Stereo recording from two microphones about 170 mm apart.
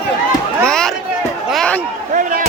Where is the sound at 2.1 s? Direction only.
50° right (ahead or behind).